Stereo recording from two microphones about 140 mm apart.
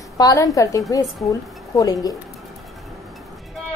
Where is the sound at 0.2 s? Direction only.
25° left (ahead or behind).